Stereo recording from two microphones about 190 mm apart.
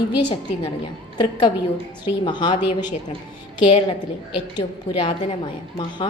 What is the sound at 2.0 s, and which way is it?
Speech, 25° left (ahead or behind).